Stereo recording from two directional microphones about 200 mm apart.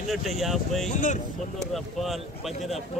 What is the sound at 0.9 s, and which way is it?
Speech, 35° left (ahead or behind).